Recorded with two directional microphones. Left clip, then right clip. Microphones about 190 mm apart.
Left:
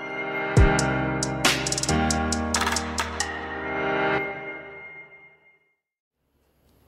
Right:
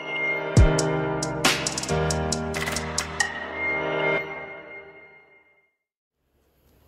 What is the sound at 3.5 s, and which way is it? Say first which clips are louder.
Music: even; 15° right (ahead or behind).